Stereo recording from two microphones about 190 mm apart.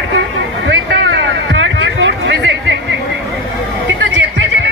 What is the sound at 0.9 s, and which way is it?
Chatter, 75° right (ahead or behind).